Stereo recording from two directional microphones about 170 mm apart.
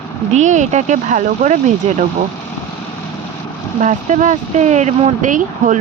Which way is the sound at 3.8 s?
45° right (ahead or behind).